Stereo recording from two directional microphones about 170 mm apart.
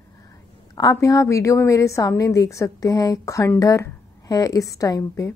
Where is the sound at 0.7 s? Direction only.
20° left (ahead or behind).